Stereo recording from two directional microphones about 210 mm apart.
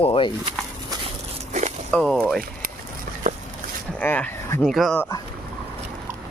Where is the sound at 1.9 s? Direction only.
5° left (ahead or behind).